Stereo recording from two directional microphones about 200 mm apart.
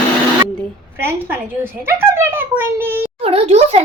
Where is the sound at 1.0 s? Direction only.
10° right (ahead or behind).